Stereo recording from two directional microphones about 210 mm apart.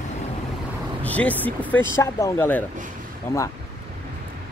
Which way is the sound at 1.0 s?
5° left (ahead or behind).